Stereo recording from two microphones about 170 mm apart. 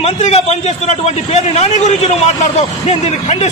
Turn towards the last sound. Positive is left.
turn(degrees=40)  # may be behind; listen again after turning